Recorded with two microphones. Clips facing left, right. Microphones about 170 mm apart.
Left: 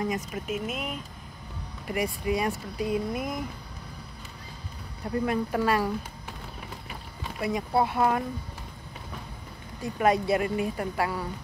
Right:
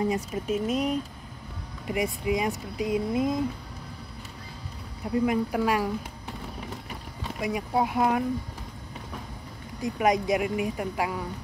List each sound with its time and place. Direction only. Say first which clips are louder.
0.1 s speech: right 3 dB; 35° right (ahead or behind)
1.9 s speech: right 1 dB; 20° right (ahead or behind)
5.0 s a woman's voice: right 3 dB; 10° right (ahead or behind)
7.3 s a woman's voice: left 1 dB; 10° right (ahead or behind)
9.8 s a woman's voice: even; 15° right (ahead or behind)